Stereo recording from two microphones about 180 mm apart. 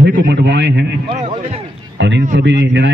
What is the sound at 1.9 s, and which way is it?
Speech, 85° right.